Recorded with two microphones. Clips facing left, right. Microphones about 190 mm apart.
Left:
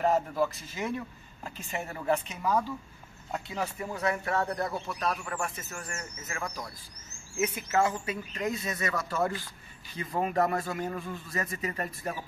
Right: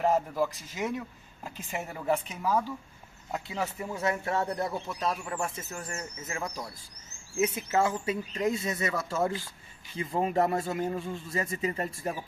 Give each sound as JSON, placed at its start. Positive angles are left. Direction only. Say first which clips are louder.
{"t": 0.0, "sound": "speech", "louder": "even", "side_deg": -15}
{"t": 3.9, "sound": "speech", "louder": "even", "side_deg": -25}